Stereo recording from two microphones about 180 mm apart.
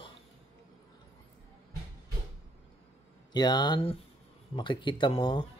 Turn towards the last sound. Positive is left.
turn(degrees=30)  # may be behind; listen again after turning